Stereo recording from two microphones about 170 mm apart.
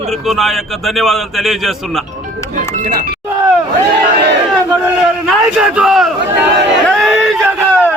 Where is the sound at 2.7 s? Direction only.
50° right (ahead or behind).